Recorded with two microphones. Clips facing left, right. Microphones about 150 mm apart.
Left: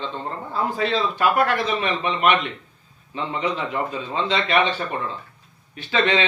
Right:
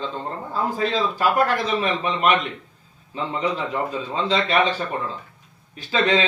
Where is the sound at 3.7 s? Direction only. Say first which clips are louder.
Right 1 dB; 35° right (ahead or behind).